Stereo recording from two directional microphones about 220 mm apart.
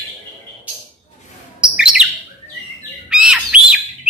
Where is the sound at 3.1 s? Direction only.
5° right (ahead or behind).